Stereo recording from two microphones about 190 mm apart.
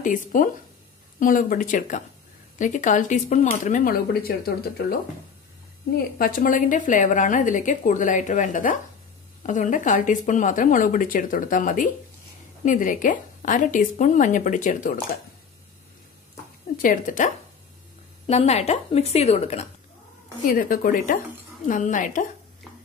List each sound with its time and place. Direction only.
0.0 s a woman's voice: 45° left (ahead or behind)
5.9 s a woman's voice: 50° left (ahead or behind)
16.7 s a woman's voice: 45° left (ahead or behind)
20.4 s a woman's voice: 45° left (ahead or behind)